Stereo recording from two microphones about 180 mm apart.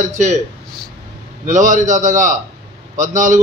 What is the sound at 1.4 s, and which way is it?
A man's voice, 45° right (ahead or behind).